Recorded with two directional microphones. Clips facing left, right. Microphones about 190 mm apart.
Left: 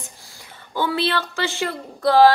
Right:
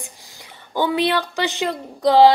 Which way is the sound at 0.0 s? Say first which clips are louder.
Right 2 dB; 20° right (ahead or behind).